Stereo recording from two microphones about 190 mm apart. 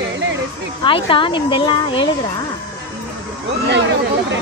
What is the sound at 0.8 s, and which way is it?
Speech, 25° left (ahead or behind).